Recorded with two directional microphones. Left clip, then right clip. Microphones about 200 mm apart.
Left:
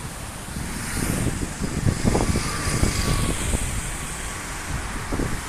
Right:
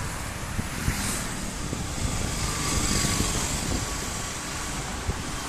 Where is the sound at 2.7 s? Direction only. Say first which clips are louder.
Right 1 dB; 55° right (ahead or behind).